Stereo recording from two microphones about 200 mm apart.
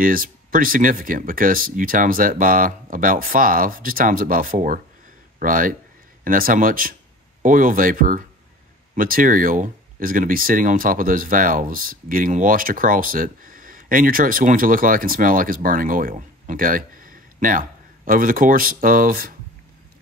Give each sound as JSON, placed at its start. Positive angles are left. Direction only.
{"t": 0.0, "sound": "speech", "side_deg": -45}